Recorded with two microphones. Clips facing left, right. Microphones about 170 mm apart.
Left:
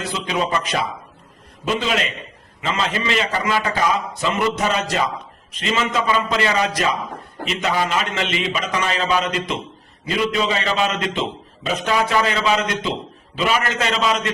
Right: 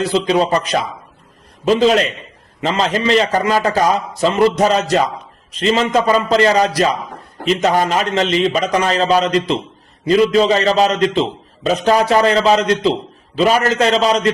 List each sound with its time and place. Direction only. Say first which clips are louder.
0.0 s a man's voice: right 8 dB; 35° right (ahead or behind)